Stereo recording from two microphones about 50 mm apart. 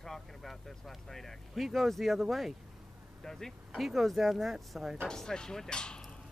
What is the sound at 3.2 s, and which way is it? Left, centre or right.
Speech, centre.